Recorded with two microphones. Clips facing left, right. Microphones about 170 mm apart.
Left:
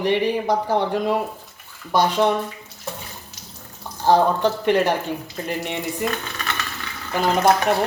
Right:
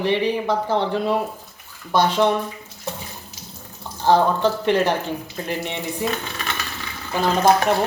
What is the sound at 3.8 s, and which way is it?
Speech, 15° left (ahead or behind).